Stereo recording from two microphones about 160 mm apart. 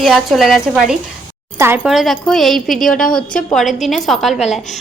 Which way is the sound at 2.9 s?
60° left (ahead or behind).